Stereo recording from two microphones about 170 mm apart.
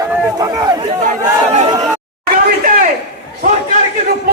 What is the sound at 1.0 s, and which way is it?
Speech, 50° right (ahead or behind).